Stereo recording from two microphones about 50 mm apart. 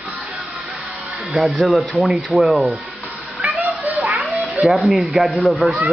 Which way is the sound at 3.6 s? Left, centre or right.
Right.